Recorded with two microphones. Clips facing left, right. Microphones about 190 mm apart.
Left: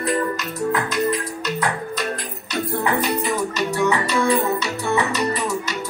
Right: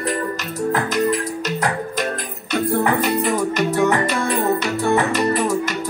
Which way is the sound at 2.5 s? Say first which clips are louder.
Right 4 dB; 55° right (ahead or behind).